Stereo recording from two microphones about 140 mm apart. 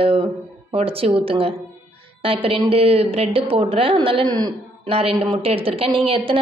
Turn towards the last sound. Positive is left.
turn(degrees=-40)  # may be behind; listen again after turning